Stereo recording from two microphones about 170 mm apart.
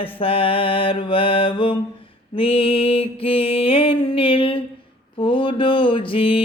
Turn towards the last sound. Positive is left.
turn(degrees=30)  # may be behind; listen again after turning